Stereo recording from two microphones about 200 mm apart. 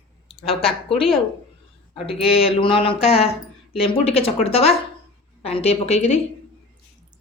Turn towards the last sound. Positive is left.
turn(degrees=30)  # may be behind; listen again after turning